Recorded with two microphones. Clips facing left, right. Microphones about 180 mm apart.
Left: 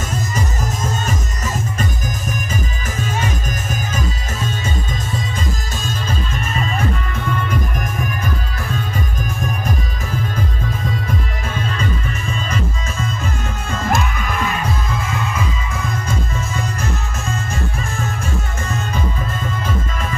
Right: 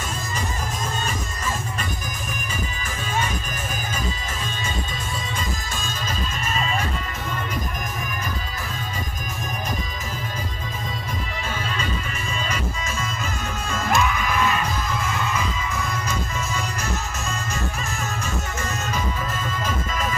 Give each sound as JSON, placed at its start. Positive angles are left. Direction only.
{"t": 13.7, "sound": "music", "side_deg": 45}